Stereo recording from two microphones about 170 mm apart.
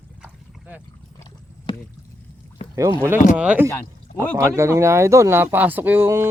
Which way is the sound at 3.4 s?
5° right (ahead or behind).